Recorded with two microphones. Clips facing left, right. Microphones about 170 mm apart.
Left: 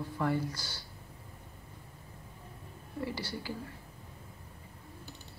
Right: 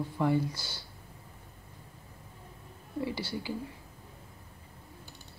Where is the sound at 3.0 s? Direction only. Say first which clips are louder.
Right 2 dB; 20° right (ahead or behind).